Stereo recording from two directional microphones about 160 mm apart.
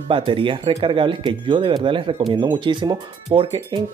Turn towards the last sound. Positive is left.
turn(degrees=-30)  # may be behind; listen again after turning